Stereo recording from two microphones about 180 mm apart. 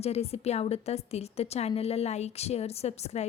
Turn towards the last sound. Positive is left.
turn(degrees=35)  # may be behind; listen again after turning